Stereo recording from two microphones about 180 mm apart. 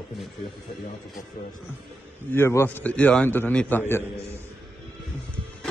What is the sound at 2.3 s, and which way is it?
Speech, 15° left (ahead or behind).